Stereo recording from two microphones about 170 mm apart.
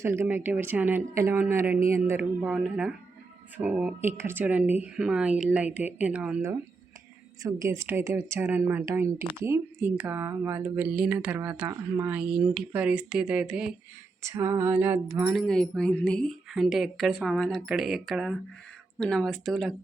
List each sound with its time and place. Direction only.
0.0 s speech: 15° right (ahead or behind)
7.4 s speech: 15° right (ahead or behind)
14.2 s speech: 15° right (ahead or behind)
15.3 s speech: centre (ahead or behind)